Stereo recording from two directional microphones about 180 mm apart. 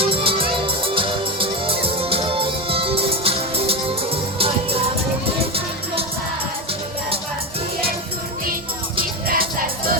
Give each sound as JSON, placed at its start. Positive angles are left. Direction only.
{"t": 0.0, "sound": "music", "side_deg": -30}
{"t": 9.2, "sound": "music", "side_deg": -55}